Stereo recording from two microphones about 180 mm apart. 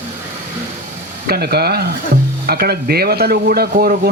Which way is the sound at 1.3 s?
60° right (ahead or behind).